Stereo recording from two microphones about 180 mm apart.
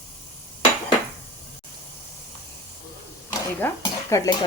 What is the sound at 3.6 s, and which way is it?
Stir, 15° left (ahead or behind).